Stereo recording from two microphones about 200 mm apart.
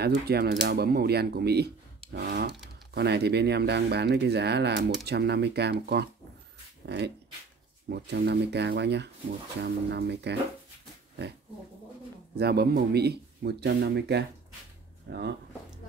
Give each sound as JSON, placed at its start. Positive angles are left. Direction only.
{"t": 0.3, "sound": "a man's voice", "side_deg": -50}
{"t": 7.9, "sound": "speech", "side_deg": -55}
{"t": 12.4, "sound": "a man's voice", "side_deg": -55}